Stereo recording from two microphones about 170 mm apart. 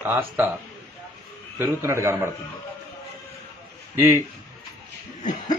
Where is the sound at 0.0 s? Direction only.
15° right (ahead or behind).